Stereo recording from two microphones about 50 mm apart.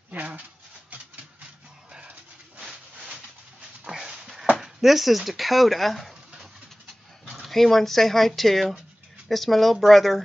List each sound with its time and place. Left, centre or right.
0.1 s dog: right
1.9 s dog: right
2.6 s a sound: centre
4.6 s speech: centre
7.3 s speech: centre